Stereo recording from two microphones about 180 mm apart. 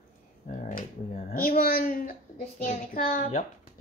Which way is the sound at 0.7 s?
45° left (ahead or behind).